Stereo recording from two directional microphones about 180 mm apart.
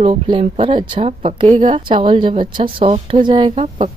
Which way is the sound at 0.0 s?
35° right (ahead or behind).